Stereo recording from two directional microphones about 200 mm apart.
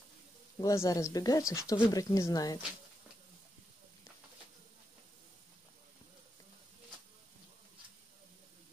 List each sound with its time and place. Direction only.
0.6 s speech: 15° left (ahead or behind)